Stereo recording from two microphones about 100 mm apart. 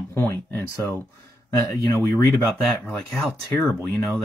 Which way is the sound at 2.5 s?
Centre (ahead or behind).